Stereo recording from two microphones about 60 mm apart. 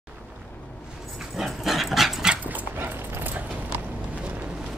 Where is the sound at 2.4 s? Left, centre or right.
Right.